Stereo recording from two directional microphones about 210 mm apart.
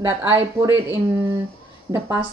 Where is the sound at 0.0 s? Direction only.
10° right (ahead or behind).